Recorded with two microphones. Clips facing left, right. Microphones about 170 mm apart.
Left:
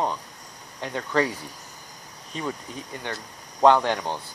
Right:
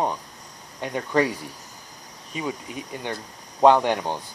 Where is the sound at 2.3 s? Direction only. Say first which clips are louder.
Right 2 dB; 10° right (ahead or behind).